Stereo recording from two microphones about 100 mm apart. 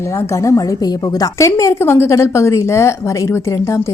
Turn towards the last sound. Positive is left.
turn(degrees=30)  # may be behind; listen again after turning